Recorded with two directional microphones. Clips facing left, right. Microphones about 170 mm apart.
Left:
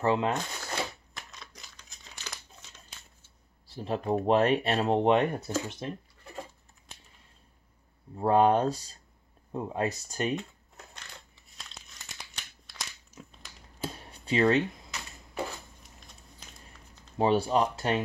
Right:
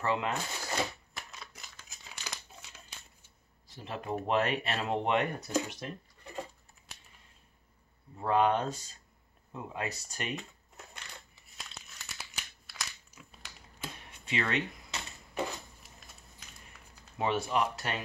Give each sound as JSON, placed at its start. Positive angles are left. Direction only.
{"t": 0.0, "sound": "speech", "side_deg": 30}
{"t": 0.3, "sound": "shuffling cards", "side_deg": -5}
{"t": 3.6, "sound": "speech", "side_deg": 35}
{"t": 8.2, "sound": "speech", "side_deg": 35}
{"t": 11.5, "sound": "crumpling", "side_deg": -5}
{"t": 13.7, "sound": "a sound", "side_deg": 35}
{"t": 14.9, "sound": "a sound", "side_deg": -25}
{"t": 17.2, "sound": "speech", "side_deg": 35}